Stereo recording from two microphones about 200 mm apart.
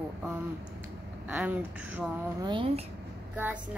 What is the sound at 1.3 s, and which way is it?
Speech, 5° right (ahead or behind).